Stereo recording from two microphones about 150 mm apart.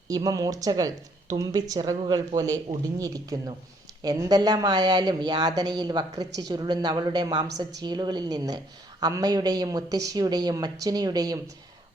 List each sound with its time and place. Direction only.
0.1 s a woman's voice: 25° right (ahead or behind)